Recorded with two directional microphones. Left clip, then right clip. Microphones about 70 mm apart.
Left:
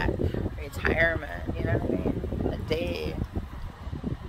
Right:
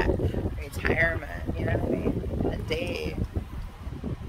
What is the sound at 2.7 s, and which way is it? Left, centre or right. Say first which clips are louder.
Speech: left 1 dB; right.